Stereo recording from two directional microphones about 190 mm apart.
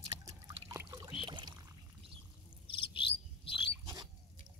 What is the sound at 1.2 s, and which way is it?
Pour, 25° right (ahead or behind).